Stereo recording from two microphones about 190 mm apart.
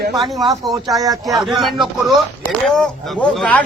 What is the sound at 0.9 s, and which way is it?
Speech, 20° right (ahead or behind).